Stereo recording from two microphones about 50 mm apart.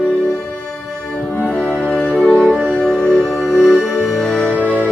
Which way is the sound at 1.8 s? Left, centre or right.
Left.